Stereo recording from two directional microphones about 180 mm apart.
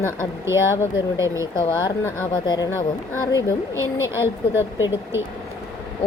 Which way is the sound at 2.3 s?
25° left (ahead or behind).